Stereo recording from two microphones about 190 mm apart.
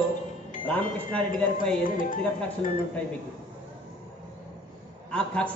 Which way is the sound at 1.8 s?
45° left (ahead or behind).